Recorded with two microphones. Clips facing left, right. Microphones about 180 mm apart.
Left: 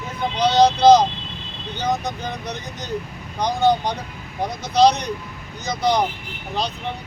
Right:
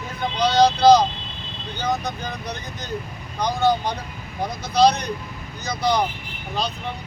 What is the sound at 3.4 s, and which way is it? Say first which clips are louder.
Speech: left 2 dB; 20° left (ahead or behind).